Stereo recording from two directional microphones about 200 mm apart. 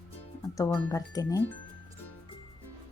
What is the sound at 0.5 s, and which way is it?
Speech, 15° left (ahead or behind).